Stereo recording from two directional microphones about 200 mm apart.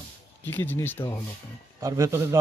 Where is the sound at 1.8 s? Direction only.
15° right (ahead or behind).